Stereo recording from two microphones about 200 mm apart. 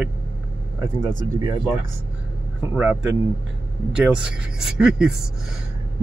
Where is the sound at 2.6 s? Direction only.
10° right (ahead or behind).